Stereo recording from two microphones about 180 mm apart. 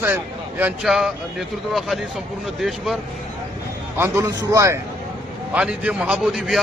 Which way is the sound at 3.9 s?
15° right (ahead or behind).